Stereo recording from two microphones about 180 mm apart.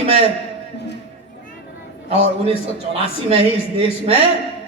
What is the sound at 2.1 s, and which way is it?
A man's voice, 35° right (ahead or behind).